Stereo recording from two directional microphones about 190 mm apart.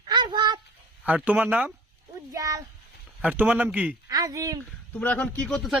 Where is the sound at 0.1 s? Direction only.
25° right (ahead or behind).